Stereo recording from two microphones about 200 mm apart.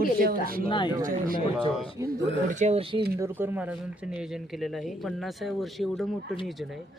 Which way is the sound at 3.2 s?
10° right (ahead or behind).